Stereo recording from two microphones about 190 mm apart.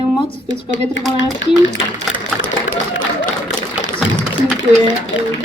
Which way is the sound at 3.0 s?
45° left (ahead or behind).